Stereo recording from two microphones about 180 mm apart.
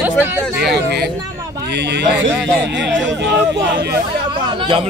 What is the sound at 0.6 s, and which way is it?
Speech, 65° right (ahead or behind).